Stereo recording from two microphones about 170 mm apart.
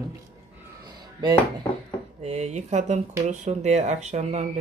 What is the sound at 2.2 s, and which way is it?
Speech, 40° right (ahead or behind).